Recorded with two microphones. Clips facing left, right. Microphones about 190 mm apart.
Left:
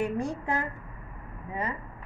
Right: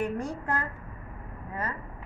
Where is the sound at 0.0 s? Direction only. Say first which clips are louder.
Left 1 dB; 10° left (ahead or behind).